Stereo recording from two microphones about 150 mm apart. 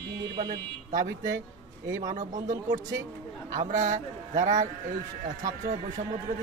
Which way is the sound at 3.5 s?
60° right (ahead or behind).